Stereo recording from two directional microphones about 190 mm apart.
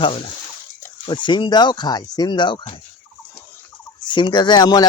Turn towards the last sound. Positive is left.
turn(degrees=20)  # may be behind; listen again after turning